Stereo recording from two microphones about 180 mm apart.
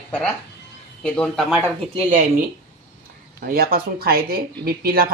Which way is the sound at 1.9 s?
40° right (ahead or behind).